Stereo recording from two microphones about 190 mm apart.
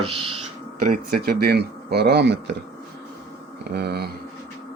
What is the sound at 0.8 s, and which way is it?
Speech, 50° right (ahead or behind).